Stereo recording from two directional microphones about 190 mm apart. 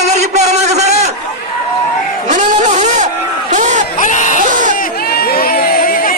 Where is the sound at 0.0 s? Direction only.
35° right (ahead or behind).